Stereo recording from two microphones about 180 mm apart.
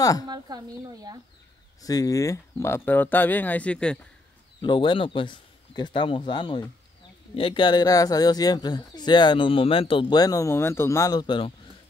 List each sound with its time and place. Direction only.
0.0 s speech: 20° left (ahead or behind)
0.3 s speech: 20° right (ahead or behind)
1.8 s speech: 20° left (ahead or behind)
4.6 s speech: 25° left (ahead or behind)